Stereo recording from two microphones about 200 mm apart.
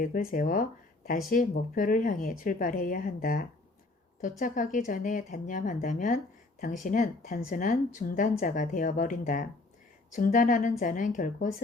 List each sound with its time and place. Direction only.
0.0 s speech: 45° left (ahead or behind)